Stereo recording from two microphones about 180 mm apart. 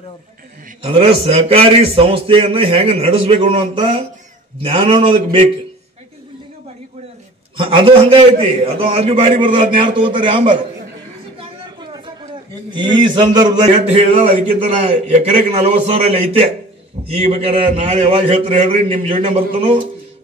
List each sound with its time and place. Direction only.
0.8 s a man's voice: 30° right (ahead or behind)
7.5 s a man's voice: 30° right (ahead or behind)
12.7 s a man's voice: 25° right (ahead or behind)
14.0 s a man's voice: 35° right (ahead or behind)